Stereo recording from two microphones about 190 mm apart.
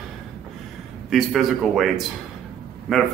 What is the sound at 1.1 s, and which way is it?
Speech, centre (ahead or behind).